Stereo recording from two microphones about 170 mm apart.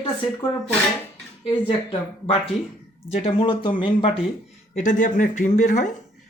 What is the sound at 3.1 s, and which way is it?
Speech, 35° left (ahead or behind).